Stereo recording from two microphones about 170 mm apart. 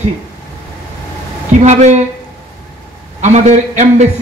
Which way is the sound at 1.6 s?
40° right (ahead or behind).